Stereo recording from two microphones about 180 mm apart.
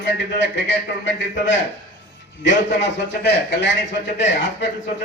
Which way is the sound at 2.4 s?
80° left.